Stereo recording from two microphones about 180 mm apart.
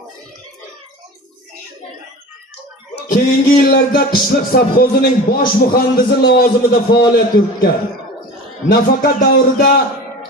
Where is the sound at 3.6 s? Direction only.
55° left (ahead or behind).